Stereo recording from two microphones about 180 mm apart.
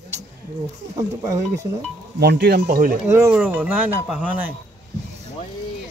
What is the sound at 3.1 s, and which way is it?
Speech, 10° right (ahead or behind).